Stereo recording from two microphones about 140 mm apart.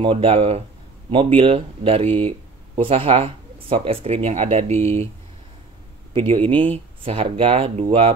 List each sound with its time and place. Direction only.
0.0 s speech: 40° right (ahead or behind)
6.1 s speech: 40° right (ahead or behind)